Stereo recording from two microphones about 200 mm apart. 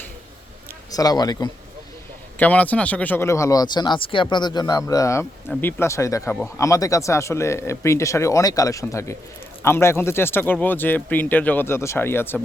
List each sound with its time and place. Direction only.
0.9 s speech: 20° left (ahead or behind)
2.4 s speech: 5° left (ahead or behind)